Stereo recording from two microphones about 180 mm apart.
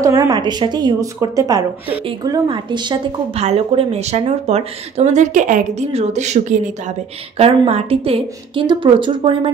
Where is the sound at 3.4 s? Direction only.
35° right (ahead or behind).